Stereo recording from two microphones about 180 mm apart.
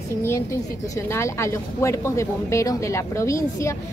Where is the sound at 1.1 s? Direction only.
15° left (ahead or behind).